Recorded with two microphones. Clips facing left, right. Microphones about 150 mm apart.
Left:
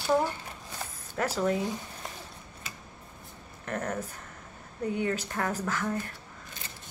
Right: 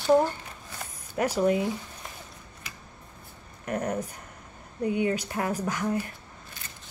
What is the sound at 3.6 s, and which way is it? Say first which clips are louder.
A woman's voice: right 4 dB; 15° right (ahead or behind).